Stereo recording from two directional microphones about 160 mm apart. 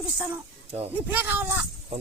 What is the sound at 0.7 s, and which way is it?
Speech, 40° right (ahead or behind).